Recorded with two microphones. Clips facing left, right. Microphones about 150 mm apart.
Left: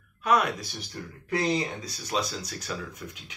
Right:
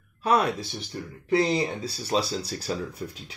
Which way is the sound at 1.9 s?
30° right (ahead or behind).